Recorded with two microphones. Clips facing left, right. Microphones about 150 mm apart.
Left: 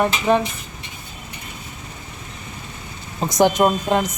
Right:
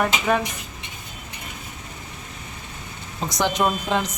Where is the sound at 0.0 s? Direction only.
25° left (ahead or behind).